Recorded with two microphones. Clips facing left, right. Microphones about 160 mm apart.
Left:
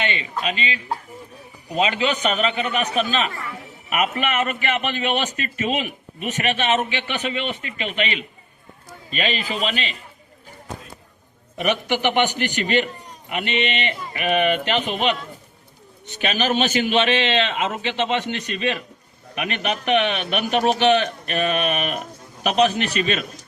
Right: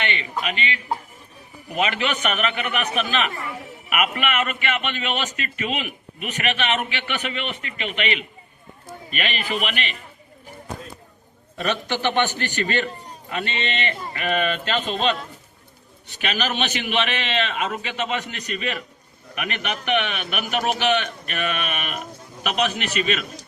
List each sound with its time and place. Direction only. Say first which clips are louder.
1.7 s a man's voice: left 3 dB; 25° left (ahead or behind)
7.8 s a man's voice: left 2 dB; 35° left (ahead or behind)
9.0 s a man's voice: left 3 dB; 30° left (ahead or behind)
11.5 s a man's voice: left 3 dB; 15° left (ahead or behind)
16.2 s a man's voice: left 3 dB; 20° left (ahead or behind)
16.5 s a man's voice: left 6 dB; 35° left (ahead or behind)